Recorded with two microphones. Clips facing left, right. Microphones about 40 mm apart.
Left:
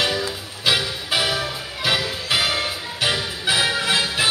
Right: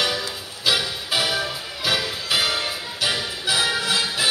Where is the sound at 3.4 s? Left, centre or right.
Left.